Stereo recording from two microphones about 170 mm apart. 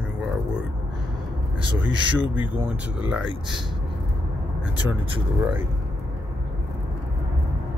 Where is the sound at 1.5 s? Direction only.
30° right (ahead or behind).